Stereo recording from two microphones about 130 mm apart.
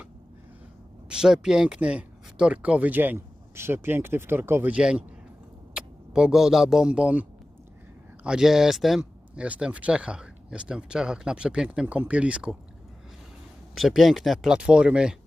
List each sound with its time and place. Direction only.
1.1 s speech: 5° right (ahead or behind)
13.7 s speech: centre (ahead or behind)